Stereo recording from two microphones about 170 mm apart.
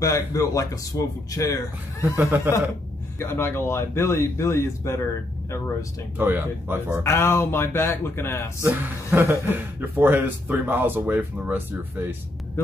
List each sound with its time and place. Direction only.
0.0 s speech: 20° left (ahead or behind)
2.1 s a man's voice: 15° right (ahead or behind)
3.2 s speech: 15° left (ahead or behind)
6.1 s a man's voice: 10° right (ahead or behind)
7.0 s speech: 15° left (ahead or behind)
8.6 s a man's voice: 10° right (ahead or behind)